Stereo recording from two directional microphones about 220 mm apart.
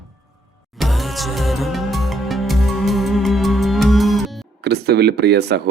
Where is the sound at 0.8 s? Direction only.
Centre (ahead or behind).